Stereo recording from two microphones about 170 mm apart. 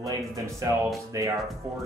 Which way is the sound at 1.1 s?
20° right (ahead or behind).